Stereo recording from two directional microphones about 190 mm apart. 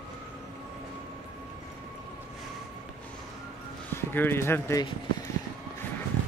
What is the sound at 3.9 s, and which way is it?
Speech, 10° left (ahead or behind).